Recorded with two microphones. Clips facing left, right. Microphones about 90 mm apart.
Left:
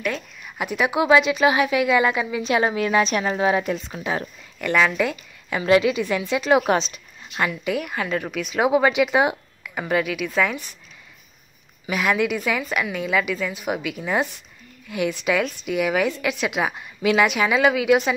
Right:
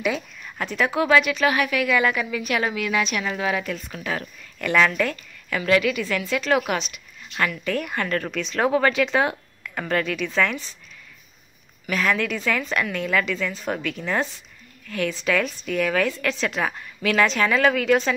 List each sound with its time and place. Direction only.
0.6 s a woman's voice: 15° left (ahead or behind)
4.7 s a woman's voice: 10° left (ahead or behind)
6.7 s speech: 30° left (ahead or behind)
7.3 s speech: 15° left (ahead or behind)
11.8 s speech: 15° left (ahead or behind)